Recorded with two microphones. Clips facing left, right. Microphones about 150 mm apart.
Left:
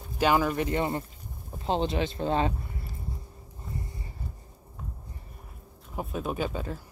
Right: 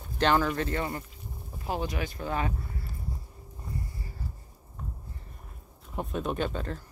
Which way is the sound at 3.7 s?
20° left (ahead or behind).